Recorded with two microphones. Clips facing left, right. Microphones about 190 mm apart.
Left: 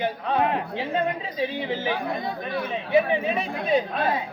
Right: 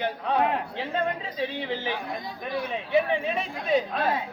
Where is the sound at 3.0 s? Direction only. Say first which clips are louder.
Left 3 dB; 5° left (ahead or behind).